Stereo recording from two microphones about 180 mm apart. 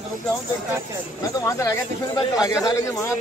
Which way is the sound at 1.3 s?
15° left (ahead or behind).